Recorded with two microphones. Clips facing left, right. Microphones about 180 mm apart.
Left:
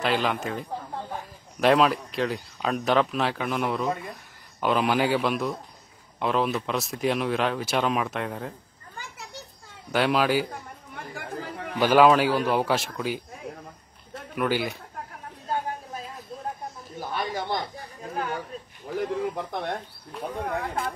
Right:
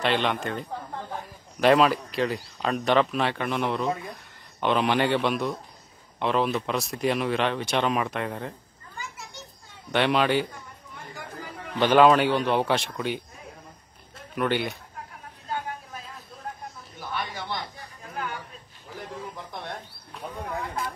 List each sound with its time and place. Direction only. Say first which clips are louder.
0.0 s speech: even; centre (ahead or behind)
9.9 s speech: even; centre (ahead or behind)
11.0 s chatter: left 4 dB; 65° left (ahead or behind)
11.7 s speech: even; 10° left (ahead or behind)
14.3 s speech: even; centre (ahead or behind)
17.1 s a sound: left 4 dB; 40° left (ahead or behind)
19.3 s speech: left 6 dB; 65° left (ahead or behind)